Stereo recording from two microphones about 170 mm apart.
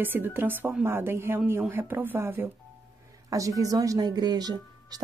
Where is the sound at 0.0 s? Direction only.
10° right (ahead or behind).